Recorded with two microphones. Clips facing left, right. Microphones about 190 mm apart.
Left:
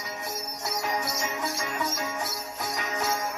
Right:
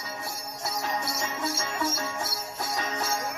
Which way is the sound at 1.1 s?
20° left (ahead or behind).